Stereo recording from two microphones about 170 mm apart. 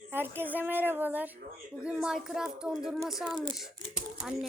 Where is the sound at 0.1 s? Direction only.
10° right (ahead or behind).